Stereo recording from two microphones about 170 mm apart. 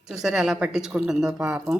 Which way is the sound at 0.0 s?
5° right (ahead or behind).